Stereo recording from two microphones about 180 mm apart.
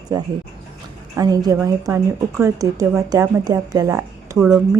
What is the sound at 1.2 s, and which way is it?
Speech, 20° right (ahead or behind).